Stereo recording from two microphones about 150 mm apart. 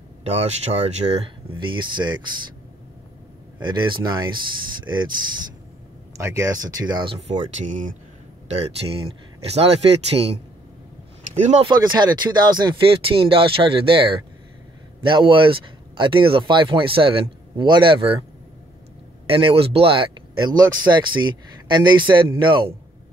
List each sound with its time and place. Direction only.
0.2 s speech: 45° right (ahead or behind)
3.6 s speech: 30° right (ahead or behind)
6.1 s speech: 20° right (ahead or behind)
7.2 s speech: 50° right (ahead or behind)
11.6 s speech: 30° right (ahead or behind)
19.2 s speech: 40° right (ahead or behind)